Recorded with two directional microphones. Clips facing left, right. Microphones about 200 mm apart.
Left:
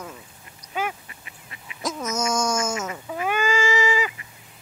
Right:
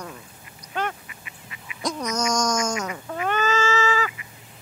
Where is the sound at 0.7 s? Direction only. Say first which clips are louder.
Even; 5° left (ahead or behind).